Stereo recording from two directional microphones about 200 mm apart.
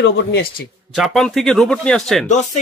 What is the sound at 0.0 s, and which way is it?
Speech, 55° left (ahead or behind).